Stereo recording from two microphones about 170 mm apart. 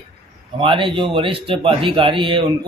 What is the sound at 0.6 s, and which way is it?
A man's voice, 30° right (ahead or behind).